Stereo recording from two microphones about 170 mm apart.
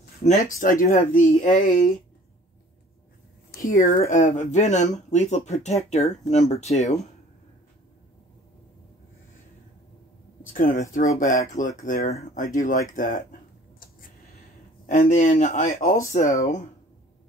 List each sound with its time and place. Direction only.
0.2 s speech: 45° left (ahead or behind)
3.6 s speech: 50° left (ahead or behind)
10.4 s speech: 55° left (ahead or behind)